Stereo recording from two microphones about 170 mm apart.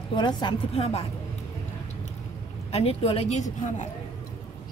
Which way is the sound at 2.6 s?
35° left (ahead or behind).